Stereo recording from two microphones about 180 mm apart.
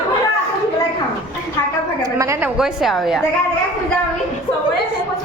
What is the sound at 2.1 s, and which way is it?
Speech, 15° right (ahead or behind).